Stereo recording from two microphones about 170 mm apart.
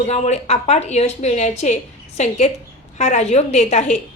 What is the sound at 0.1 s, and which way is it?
A woman's voice, 40° left (ahead or behind).